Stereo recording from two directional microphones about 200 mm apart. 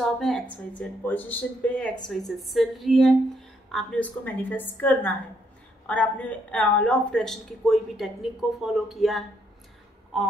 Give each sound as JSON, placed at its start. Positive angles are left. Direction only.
{"t": 0.0, "sound": "a woman's voice", "side_deg": 0}